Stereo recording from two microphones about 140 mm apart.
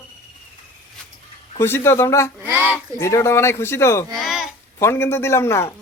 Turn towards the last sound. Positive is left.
turn(degrees=20)  # may be behind; listen again after turning